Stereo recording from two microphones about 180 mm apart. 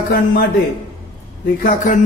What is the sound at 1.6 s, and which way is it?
Speech, 50° left (ahead or behind).